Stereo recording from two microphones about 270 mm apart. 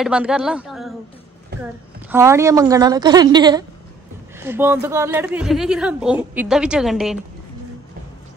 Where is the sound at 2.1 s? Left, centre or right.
Centre.